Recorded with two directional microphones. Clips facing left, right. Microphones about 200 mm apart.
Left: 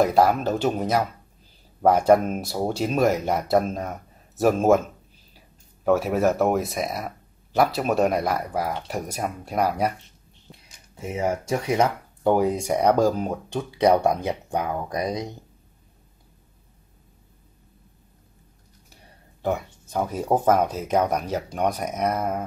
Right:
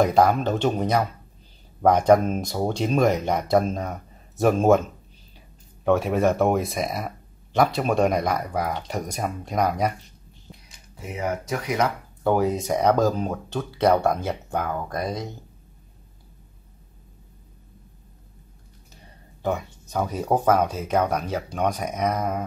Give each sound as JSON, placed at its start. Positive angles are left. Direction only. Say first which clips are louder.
{"t": 0.0, "sound": "speech", "louder": "even", "side_deg": 5}
{"t": 5.9, "sound": "speech", "louder": "even", "side_deg": 5}
{"t": 11.0, "sound": "speech", "louder": "left 3 dB", "side_deg": 25}
{"t": 12.3, "sound": "speech", "louder": "left 1 dB", "side_deg": 15}
{"t": 19.4, "sound": "speech", "louder": "even", "side_deg": 10}